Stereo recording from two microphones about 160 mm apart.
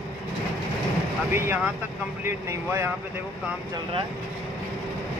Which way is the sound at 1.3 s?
15° right (ahead or behind).